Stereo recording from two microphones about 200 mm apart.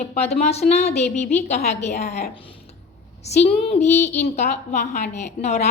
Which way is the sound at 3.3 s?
35° left (ahead or behind).